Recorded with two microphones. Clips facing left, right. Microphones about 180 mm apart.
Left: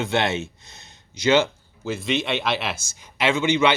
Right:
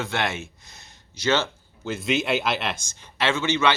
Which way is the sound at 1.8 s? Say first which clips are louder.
Even; centre (ahead or behind).